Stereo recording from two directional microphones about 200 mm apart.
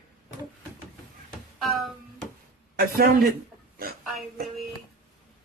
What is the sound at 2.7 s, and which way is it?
Speech, 50° right (ahead or behind).